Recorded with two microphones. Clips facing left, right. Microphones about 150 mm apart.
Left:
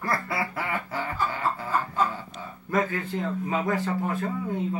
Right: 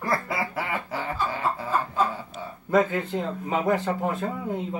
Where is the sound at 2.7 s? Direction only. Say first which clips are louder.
Right 4 dB; 20° right (ahead or behind).